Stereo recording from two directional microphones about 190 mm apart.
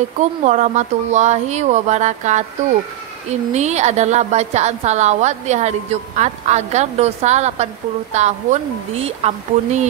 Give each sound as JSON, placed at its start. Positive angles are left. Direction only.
{"t": 0.2, "sound": "a woman's voice", "side_deg": -40}